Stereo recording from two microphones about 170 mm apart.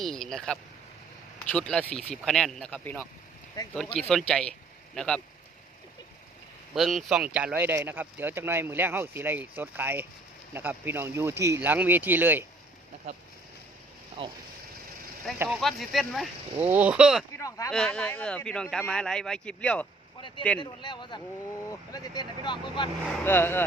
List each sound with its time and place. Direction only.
0.0 s speech: 5° left (ahead or behind)
6.7 s speech: centre (ahead or behind)
14.2 s speech: 30° right (ahead or behind)
15.4 s speech: centre (ahead or behind)
17.3 s speech: 20° left (ahead or behind)
17.7 s speech: 5° left (ahead or behind)
20.6 s speech: 25° left (ahead or behind)
23.2 s speech: 15° left (ahead or behind)